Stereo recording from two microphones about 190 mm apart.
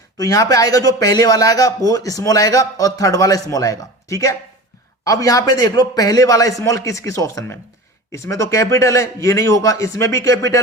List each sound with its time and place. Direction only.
0.2 s a man's voice: 20° left (ahead or behind)